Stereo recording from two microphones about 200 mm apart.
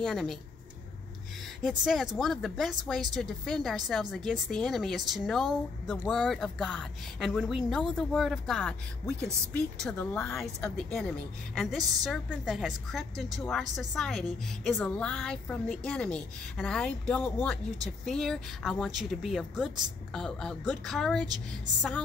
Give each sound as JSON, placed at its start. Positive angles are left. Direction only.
{"t": 0.0, "sound": "a woman's voice", "side_deg": 0}
{"t": 1.6, "sound": "a woman's voice", "side_deg": 0}